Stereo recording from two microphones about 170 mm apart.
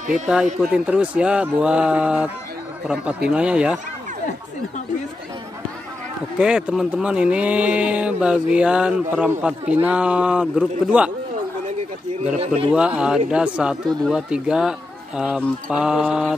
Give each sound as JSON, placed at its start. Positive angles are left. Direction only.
{"t": 0.6, "sound": "speech", "side_deg": -5}
{"t": 6.3, "sound": "speech", "side_deg": -5}
{"t": 12.4, "sound": "a man's voice", "side_deg": -35}
{"t": 12.7, "sound": "speech", "side_deg": -5}